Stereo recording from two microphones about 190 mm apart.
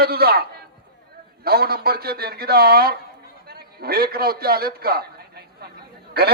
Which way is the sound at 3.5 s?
55° right (ahead or behind).